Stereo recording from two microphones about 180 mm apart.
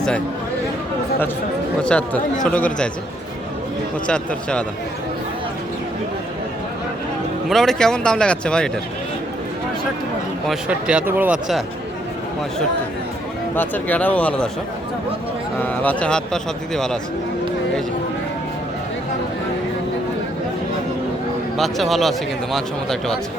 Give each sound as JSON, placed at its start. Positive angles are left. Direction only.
{"t": 1.8, "sound": "a man's voice", "side_deg": 5}
{"t": 4.0, "sound": "a man's voice", "side_deg": 5}
{"t": 7.5, "sound": "a man's voice", "side_deg": 0}
{"t": 10.4, "sound": "a man's voice", "side_deg": -5}
{"t": 13.6, "sound": "speech", "side_deg": 10}
{"t": 15.6, "sound": "a man's voice", "side_deg": 10}
{"t": 21.5, "sound": "a man's voice", "side_deg": 0}